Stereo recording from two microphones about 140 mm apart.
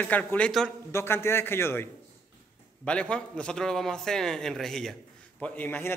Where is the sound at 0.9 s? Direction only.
20° left (ahead or behind).